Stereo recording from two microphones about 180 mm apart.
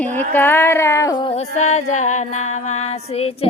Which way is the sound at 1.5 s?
40° left (ahead or behind).